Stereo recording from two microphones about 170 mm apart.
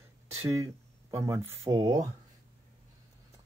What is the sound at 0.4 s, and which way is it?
Speech, 20° right (ahead or behind).